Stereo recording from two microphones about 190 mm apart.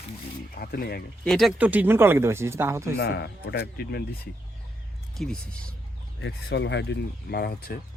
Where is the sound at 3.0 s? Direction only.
60° left (ahead or behind).